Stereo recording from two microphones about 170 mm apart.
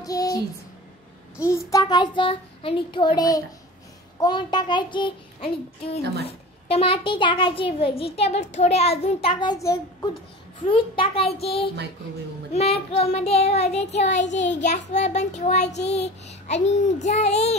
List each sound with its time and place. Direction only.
0.0 s music: 20° left (ahead or behind)
1.4 s a child's voice: 20° left (ahead or behind); by 11.7 s 35° left (ahead or behind)
12.9 s a child's voice: 35° left (ahead or behind)